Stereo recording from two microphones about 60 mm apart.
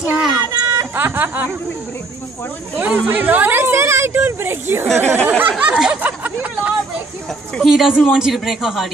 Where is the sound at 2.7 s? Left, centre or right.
Right.